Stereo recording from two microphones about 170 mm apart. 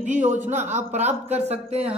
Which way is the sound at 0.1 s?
45° right (ahead or behind).